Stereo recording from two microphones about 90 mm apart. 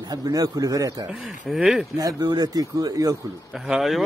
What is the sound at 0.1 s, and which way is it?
Speech, 45° right (ahead or behind).